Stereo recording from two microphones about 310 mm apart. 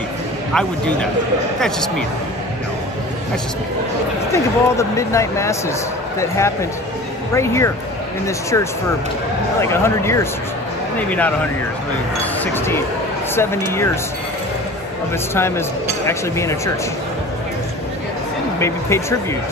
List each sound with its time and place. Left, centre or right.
0.5 s a man's voice: centre
4.3 s a man's voice: centre
12.5 s speech: centre
15.3 s speech: centre
18.6 s speech: centre